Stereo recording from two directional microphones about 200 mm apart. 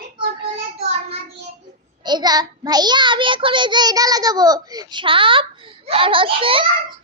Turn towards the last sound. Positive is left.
turn(degrees=-25)  # may be behind; listen again after turning